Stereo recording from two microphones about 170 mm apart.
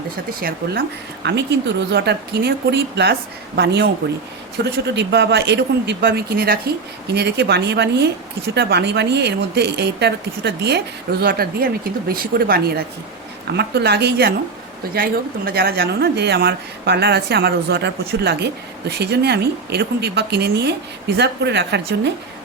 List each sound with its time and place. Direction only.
0.3 s a woman's voice: 60° right (ahead or behind)
13.5 s speech: 75° right (ahead or behind)
14.9 s speech: 60° right (ahead or behind); by 22.1 s 90° right